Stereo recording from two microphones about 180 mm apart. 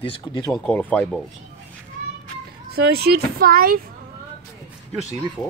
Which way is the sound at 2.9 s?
60° right (ahead or behind).